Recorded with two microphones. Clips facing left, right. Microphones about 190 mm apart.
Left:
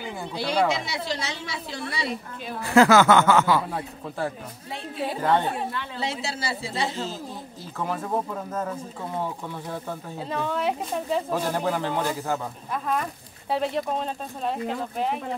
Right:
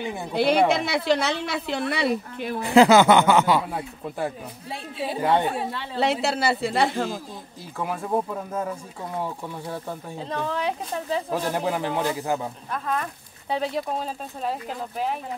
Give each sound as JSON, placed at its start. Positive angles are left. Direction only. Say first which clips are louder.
{"t": 0.3, "sound": "a woman's voice", "louder": "right 5 dB", "side_deg": -60}
{"t": 2.6, "sound": "speech", "louder": "right 2 dB", "side_deg": -15}
{"t": 5.9, "sound": "a woman's voice", "louder": "right 11 dB", "side_deg": -60}
{"t": 7.8, "sound": "speech", "louder": "right 2 dB", "side_deg": -10}
{"t": 10.1, "sound": "speech", "louder": "even", "side_deg": 5}
{"t": 11.5, "sound": "speech", "louder": "right 1 dB", "side_deg": -15}
{"t": 12.7, "sound": "speech", "louder": "left 1 dB", "side_deg": 5}